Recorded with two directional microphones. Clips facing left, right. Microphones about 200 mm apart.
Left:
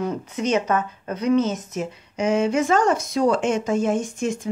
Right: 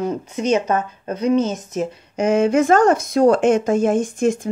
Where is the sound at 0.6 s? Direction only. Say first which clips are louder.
Right 2 dB; 30° right (ahead or behind).